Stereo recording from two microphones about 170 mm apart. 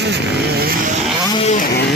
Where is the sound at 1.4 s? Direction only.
40° left (ahead or behind).